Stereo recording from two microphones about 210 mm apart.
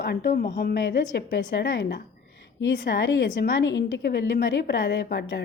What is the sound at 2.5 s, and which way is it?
A woman's voice, 60° left (ahead or behind).